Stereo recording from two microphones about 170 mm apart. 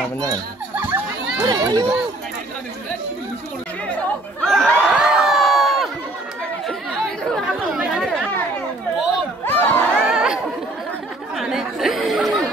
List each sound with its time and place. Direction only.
0.7 s chatter: 10° right (ahead or behind)
4.4 s crowd: centre (ahead or behind)
7.3 s chatter: centre (ahead or behind)
9.4 s crowd: 10° left (ahead or behind)
9.9 s chatter: 5° right (ahead or behind)